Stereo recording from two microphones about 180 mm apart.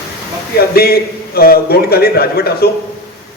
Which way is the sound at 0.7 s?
60° left (ahead or behind).